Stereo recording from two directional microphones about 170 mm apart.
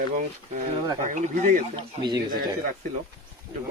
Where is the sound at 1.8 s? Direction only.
25° right (ahead or behind).